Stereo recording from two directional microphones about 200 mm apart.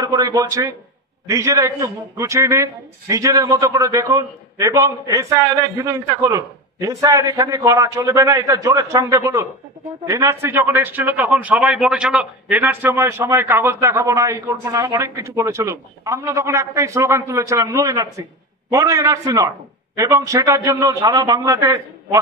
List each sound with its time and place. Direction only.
0.0 s a man's voice: 20° right (ahead or behind)